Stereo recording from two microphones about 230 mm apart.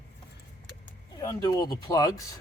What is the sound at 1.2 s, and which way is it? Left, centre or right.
Speech, centre.